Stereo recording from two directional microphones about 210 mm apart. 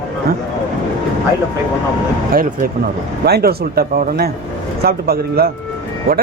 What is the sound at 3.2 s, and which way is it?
Speech, 50° right (ahead or behind).